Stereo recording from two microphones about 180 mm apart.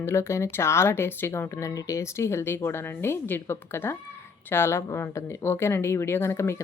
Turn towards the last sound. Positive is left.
turn(degrees=15)  # may be behind; listen again after turning